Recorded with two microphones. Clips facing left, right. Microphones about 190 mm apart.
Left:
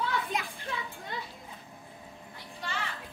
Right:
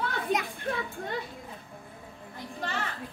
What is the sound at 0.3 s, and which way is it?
Music, 50° right (ahead or behind).